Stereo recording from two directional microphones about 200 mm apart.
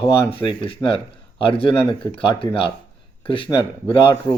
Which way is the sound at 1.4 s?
25° left (ahead or behind).